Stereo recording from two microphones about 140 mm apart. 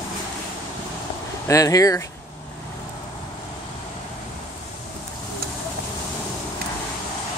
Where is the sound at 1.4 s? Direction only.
25° left (ahead or behind).